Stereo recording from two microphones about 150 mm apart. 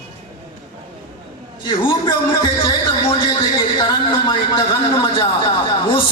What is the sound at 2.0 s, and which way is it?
Speech, 25° left (ahead or behind).